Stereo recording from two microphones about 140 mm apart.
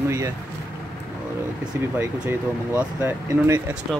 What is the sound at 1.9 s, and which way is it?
Speech, 10° right (ahead or behind).